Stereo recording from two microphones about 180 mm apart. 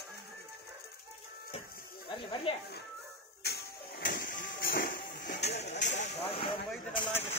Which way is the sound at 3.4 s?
65° left (ahead or behind).